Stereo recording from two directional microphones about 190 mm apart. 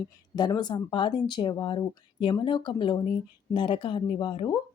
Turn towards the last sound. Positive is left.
turn(degrees=25)  # may be behind; listen again after turning